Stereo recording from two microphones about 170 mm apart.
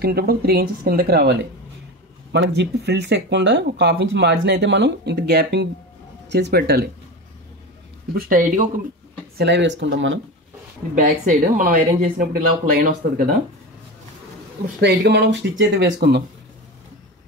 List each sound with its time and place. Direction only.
0.0 s speech: 65° right (ahead or behind)
2.3 s speech: 90° right; by 6.9 s 70° right (ahead or behind)
8.1 s speech: 55° right (ahead or behind)
9.4 s speech: 90° right
11.0 s speech: 50° right (ahead or behind)
14.8 s speech: 90° right